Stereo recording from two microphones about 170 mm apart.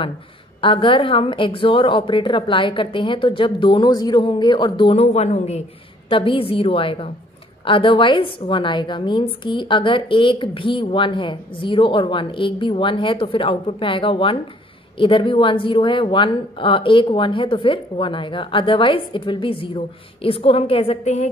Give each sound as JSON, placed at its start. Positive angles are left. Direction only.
{"t": 0.6, "sound": "a woman's voice", "side_deg": 30}